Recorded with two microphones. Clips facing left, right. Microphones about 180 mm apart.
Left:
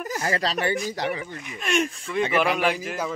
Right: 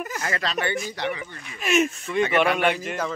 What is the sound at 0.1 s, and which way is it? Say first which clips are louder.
Speech: left 6 dB; 35° left (ahead or behind).